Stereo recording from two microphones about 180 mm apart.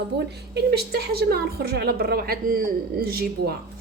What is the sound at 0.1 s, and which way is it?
A woman's voice, 70° right (ahead or behind).